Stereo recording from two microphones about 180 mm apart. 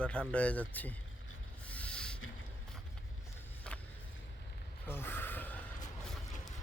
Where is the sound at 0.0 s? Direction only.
5° left (ahead or behind).